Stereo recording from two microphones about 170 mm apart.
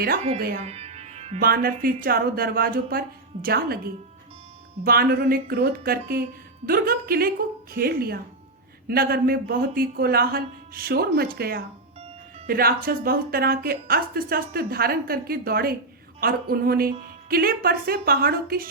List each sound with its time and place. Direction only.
0.6 s music: 40° right (ahead or behind)
1.4 s a woman's voice: 60° right (ahead or behind)